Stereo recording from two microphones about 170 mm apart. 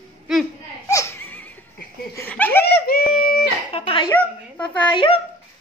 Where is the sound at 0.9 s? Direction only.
15° left (ahead or behind).